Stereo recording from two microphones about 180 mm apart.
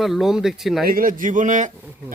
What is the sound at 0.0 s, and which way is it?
Speech, centre (ahead or behind).